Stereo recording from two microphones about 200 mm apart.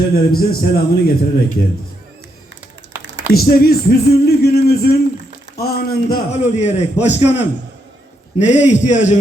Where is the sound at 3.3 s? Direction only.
50° left (ahead or behind).